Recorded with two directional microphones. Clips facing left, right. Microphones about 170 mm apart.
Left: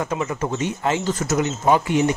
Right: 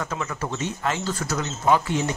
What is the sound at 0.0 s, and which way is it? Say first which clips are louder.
Speech: left 5 dB; 20° left (ahead or behind).